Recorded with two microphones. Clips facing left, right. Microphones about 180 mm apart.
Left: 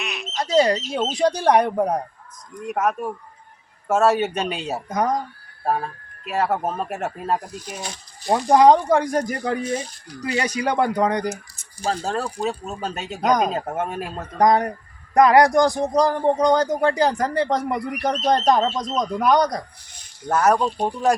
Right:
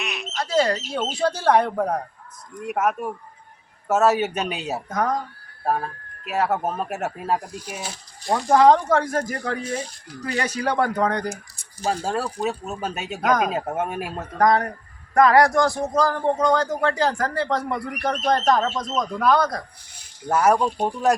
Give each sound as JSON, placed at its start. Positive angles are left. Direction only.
{"t": 0.0, "sound": "squawk", "side_deg": 0}
{"t": 0.3, "sound": "speech", "side_deg": 20}
{"t": 2.6, "sound": "speech", "side_deg": -5}
{"t": 4.9, "sound": "speech", "side_deg": 20}
{"t": 5.6, "sound": "speech", "side_deg": 0}
{"t": 8.5, "sound": "speech", "side_deg": 10}
{"t": 11.9, "sound": "speech", "side_deg": -10}
{"t": 14.3, "sound": "a man's voice", "side_deg": 20}
{"t": 19.9, "sound": "speech", "side_deg": -10}